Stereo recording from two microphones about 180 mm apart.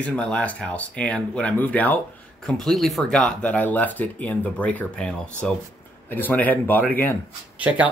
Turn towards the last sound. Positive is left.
turn(degrees=-10)  # may be behind; listen again after turning